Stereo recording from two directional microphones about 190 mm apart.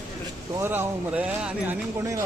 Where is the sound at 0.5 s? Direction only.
15° right (ahead or behind).